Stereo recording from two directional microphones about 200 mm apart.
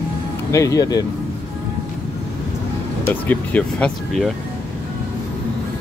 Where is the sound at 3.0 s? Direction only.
10° left (ahead or behind).